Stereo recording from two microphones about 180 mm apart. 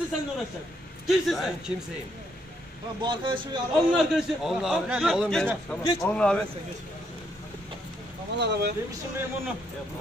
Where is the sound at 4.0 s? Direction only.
Centre (ahead or behind).